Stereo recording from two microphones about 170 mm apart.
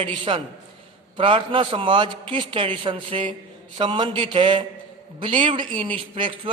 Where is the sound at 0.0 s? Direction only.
30° right (ahead or behind).